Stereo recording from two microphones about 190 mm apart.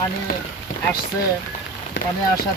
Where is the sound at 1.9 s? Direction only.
65° left (ahead or behind).